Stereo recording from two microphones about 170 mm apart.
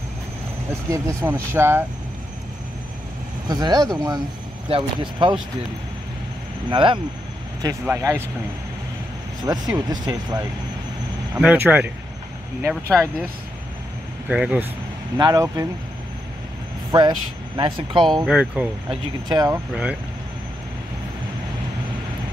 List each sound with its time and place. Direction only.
0.8 s speech: 20° right (ahead or behind)
3.4 s speech: 25° right (ahead or behind)
6.7 s speech: 30° right (ahead or behind)
7.8 s speech: 15° right (ahead or behind)
9.4 s speech: 25° right (ahead or behind)
11.3 s speech: 10° right (ahead or behind)
14.3 s speech: 5° right (ahead or behind)
15.1 s speech: 20° right (ahead or behind)
16.9 s speech: 25° right (ahead or behind)
18.2 s speech: 5° right (ahead or behind)
18.9 s speech: 25° right (ahead or behind)
19.7 s speech: 5° right (ahead or behind)